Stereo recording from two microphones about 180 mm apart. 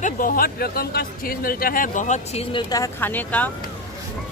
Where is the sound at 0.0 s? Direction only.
50° left (ahead or behind).